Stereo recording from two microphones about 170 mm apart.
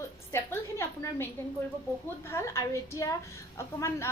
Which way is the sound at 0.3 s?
15° left (ahead or behind).